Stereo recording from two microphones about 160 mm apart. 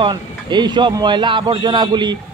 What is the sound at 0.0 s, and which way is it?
A man's voice, 30° right (ahead or behind).